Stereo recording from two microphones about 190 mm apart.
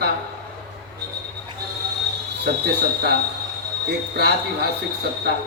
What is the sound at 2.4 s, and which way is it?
Speech, 60° right (ahead or behind).